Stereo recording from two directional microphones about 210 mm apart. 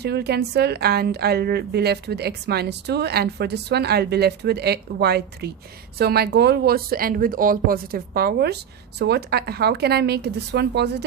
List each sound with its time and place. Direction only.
0.0 s a woman's voice: 50° right (ahead or behind)